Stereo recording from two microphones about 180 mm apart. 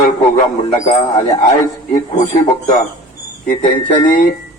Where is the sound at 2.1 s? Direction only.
40° left (ahead or behind).